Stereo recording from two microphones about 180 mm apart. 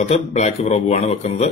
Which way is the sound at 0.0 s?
40° left (ahead or behind).